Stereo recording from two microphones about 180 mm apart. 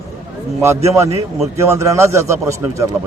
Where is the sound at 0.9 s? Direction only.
15° right (ahead or behind).